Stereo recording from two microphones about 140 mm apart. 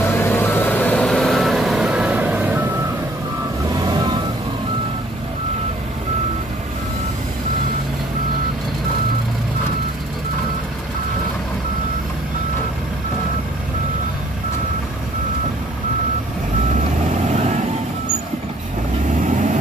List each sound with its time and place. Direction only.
0.0 s vehicle: 15° left (ahead or behind); by 2.7 s 10° right (ahead or behind)
3.7 s vehicle: 30° right (ahead or behind)
17.3 s vehicle: 55° right (ahead or behind)
19.0 s vehicle: 60° right (ahead or behind)